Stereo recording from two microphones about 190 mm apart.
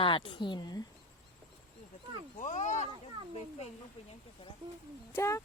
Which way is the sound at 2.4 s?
40° left (ahead or behind).